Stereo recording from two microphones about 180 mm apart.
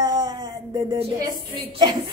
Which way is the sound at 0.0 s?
20° right (ahead or behind).